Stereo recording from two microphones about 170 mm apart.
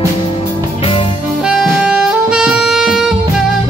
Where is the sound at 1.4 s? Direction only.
5° right (ahead or behind).